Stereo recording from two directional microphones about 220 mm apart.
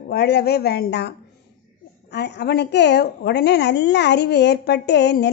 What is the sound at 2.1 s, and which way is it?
A woman's voice, 50° left (ahead or behind).